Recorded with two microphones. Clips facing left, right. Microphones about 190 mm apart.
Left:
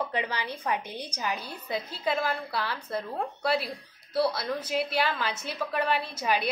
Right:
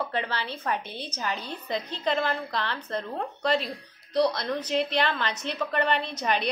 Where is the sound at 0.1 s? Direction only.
15° left (ahead or behind).